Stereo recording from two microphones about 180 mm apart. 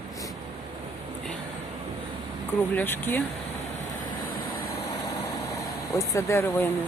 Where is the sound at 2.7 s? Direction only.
10° left (ahead or behind).